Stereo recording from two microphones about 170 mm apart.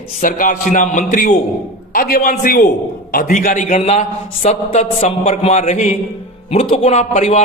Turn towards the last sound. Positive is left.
turn(degrees=40)  # may be behind; listen again after turning